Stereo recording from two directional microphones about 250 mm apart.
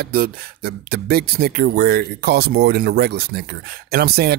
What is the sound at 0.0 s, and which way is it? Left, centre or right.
Speech, right.